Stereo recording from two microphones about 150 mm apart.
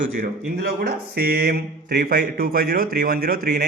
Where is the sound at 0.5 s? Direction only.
90° right.